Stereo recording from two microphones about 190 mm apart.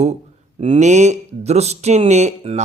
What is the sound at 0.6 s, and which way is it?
Speech, 35° right (ahead or behind).